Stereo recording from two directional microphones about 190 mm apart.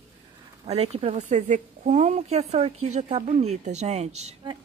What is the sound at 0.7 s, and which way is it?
Speech, 30° right (ahead or behind).